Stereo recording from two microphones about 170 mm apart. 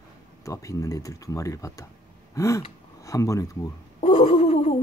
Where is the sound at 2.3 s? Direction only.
20° left (ahead or behind).